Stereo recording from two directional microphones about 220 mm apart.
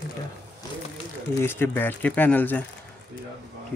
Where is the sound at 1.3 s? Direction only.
10° left (ahead or behind).